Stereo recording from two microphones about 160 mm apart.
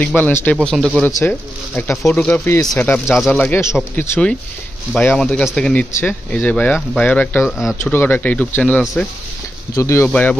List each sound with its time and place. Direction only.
0.0 s speech: 10° left (ahead or behind)
3.3 s speech: 10° left (ahead or behind)
7.4 s speech: 5° right (ahead or behind)
7.8 s speech: 15° left (ahead or behind)
10.0 s speech: 10° left (ahead or behind)